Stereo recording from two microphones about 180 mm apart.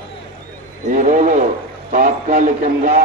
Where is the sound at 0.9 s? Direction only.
45° right (ahead or behind).